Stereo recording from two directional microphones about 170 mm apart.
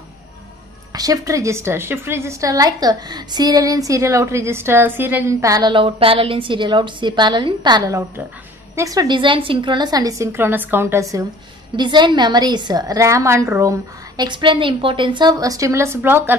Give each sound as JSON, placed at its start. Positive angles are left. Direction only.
{"t": 0.9, "sound": "a woman's voice", "side_deg": -20}